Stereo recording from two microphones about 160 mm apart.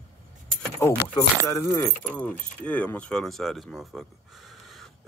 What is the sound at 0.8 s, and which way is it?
Speech, 25° left (ahead or behind).